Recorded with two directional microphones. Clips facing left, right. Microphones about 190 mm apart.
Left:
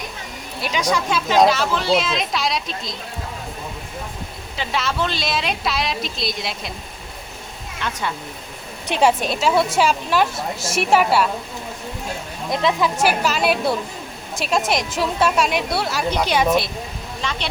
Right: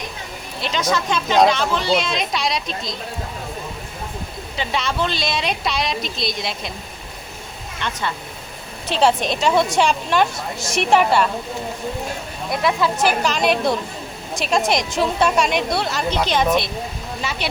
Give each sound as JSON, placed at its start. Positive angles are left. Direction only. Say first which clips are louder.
{"t": 0.6, "sound": "a woman's voice", "louder": "even", "side_deg": 10}
{"t": 4.5, "sound": "a woman's voice", "louder": "even", "side_deg": 0}
{"t": 7.8, "sound": "a woman's voice", "louder": "even", "side_deg": 5}
{"t": 12.5, "sound": "a woman's voice", "louder": "even", "side_deg": 20}
{"t": 13.0, "sound": "a woman's voice", "louder": "even", "side_deg": 5}
{"t": 17.2, "sound": "a woman's voice", "louder": "right 1 dB", "side_deg": -5}